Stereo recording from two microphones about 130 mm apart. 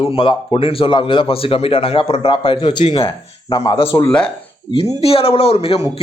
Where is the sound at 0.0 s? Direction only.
45° left (ahead or behind).